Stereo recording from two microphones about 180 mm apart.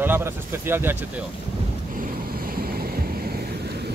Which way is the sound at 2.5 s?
55° right (ahead or behind).